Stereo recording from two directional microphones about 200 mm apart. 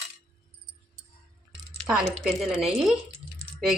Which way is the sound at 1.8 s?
5° right (ahead or behind).